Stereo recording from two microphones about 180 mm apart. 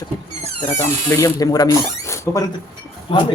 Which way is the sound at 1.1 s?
20° left (ahead or behind).